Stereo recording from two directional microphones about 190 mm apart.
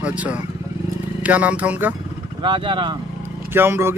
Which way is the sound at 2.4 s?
25° right (ahead or behind).